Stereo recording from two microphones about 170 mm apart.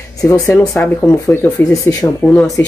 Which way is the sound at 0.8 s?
15° left (ahead or behind).